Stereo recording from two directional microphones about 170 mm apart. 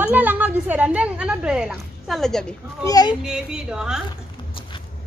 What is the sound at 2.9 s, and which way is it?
Speech, 20° left (ahead or behind).